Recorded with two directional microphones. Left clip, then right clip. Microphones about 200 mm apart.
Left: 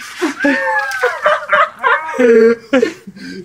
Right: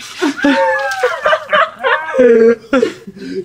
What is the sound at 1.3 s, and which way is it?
Fowl, 45° left (ahead or behind).